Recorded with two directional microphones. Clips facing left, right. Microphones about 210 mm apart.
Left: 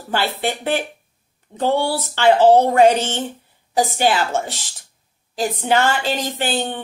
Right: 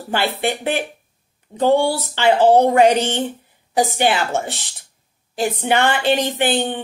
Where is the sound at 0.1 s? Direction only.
15° right (ahead or behind).